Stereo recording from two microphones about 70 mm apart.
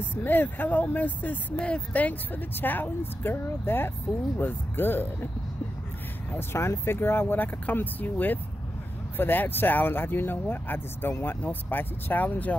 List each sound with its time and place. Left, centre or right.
0.1 s speech: left
6.3 s speech: left